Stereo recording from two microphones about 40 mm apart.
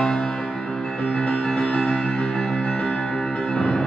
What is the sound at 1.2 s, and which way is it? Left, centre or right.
Music, left.